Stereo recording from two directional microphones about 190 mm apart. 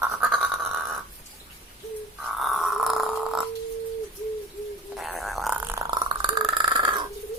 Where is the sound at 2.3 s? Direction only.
Centre (ahead or behind).